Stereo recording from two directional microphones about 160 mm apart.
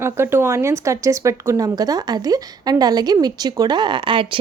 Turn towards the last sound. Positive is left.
turn(degrees=-30)  # may be behind; listen again after turning